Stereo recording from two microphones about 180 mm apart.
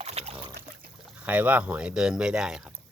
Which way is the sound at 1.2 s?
10° right (ahead or behind).